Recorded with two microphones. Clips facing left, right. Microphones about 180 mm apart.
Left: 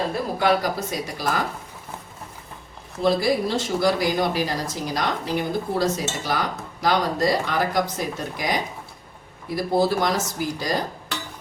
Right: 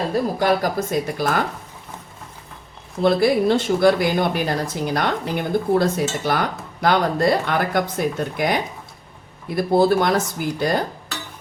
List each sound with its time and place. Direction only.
0.3 s speech: 45° right (ahead or behind)
3.0 s speech: 60° right (ahead or behind)